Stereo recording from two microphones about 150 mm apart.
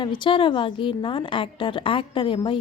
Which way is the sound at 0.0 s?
30° left (ahead or behind).